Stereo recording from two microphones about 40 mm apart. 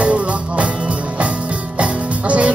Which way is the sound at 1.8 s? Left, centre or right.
Right.